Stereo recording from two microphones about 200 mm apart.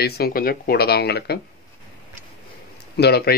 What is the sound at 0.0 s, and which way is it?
Speech, 50° left (ahead or behind).